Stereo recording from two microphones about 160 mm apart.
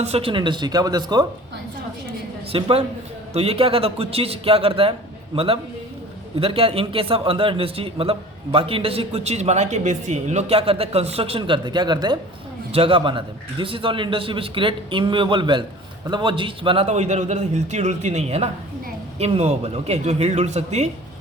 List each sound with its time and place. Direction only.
0.0 s speech: 40° right (ahead or behind)
2.5 s a man's voice: 35° right (ahead or behind)
16.8 s a man's voice: 45° right (ahead or behind)